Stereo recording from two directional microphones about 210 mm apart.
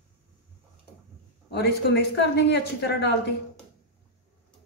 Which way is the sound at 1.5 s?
55° left (ahead or behind).